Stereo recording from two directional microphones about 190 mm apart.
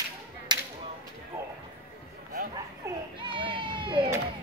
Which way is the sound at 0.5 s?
20° right (ahead or behind).